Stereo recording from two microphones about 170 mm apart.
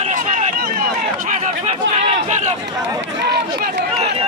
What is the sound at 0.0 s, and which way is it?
Run, 40° right (ahead or behind).